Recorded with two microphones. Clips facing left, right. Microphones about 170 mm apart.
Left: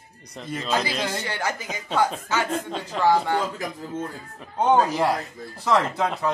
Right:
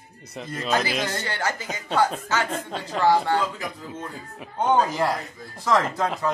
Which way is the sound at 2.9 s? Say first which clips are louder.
Even; centre (ahead or behind).